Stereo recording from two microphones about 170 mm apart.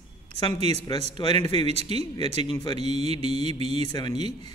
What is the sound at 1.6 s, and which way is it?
Mantra, 35° right (ahead or behind).